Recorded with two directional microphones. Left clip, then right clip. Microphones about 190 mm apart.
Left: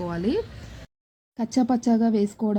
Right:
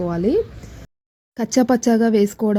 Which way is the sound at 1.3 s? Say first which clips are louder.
Right 7 dB; 45° right (ahead or behind).